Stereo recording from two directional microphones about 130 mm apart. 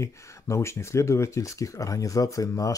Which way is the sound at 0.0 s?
20° left (ahead or behind).